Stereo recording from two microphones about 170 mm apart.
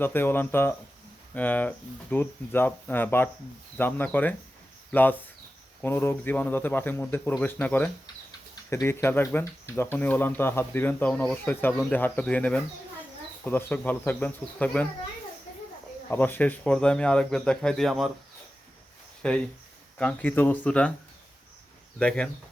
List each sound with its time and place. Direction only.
0.0 s speech: 10° left (ahead or behind)
16.0 s speech: 10° left (ahead or behind)
19.2 s speech: 5° left (ahead or behind)
21.9 s speech: 5° left (ahead or behind)